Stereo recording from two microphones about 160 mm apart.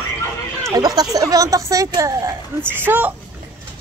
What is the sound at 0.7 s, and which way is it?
A woman's voice, 25° right (ahead or behind).